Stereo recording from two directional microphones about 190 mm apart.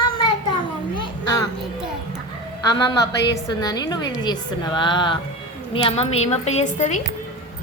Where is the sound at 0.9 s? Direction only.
20° left (ahead or behind).